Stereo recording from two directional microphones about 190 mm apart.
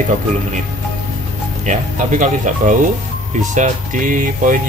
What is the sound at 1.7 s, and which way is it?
Speech, 40° right (ahead or behind).